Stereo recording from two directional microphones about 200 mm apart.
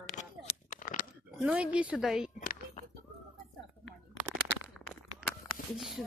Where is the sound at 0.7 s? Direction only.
40° left (ahead or behind).